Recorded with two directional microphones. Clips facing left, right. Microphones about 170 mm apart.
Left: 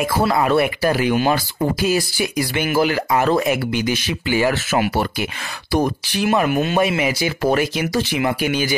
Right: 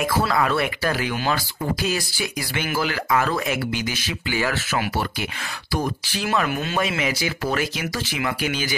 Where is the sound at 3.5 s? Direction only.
55° left (ahead or behind).